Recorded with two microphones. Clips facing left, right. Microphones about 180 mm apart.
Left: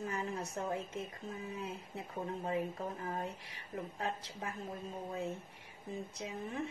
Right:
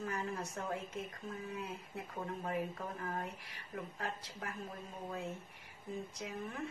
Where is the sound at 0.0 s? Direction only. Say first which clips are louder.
Left 1 dB; 20° left (ahead or behind).